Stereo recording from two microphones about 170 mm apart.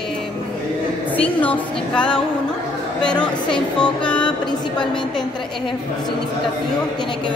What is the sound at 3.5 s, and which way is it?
Speech, 5° left (ahead or behind).